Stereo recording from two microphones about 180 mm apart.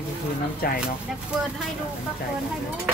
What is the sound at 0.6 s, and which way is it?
Speech, 55° left (ahead or behind).